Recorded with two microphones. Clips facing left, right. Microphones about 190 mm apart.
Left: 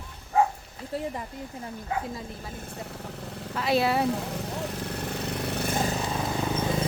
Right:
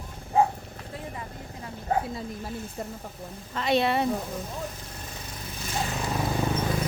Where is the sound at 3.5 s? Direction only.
5° left (ahead or behind).